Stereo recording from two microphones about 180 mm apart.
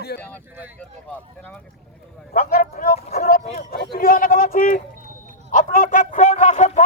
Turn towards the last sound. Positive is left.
turn(degrees=40)  # may be behind; listen again after turning